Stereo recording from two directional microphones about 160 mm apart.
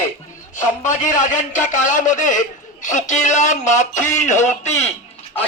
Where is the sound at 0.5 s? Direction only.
50° left (ahead or behind).